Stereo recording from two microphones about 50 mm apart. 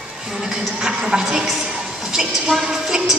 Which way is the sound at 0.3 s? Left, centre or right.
Centre.